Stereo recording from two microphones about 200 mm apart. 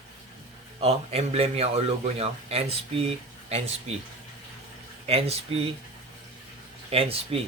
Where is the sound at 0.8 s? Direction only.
30° right (ahead or behind).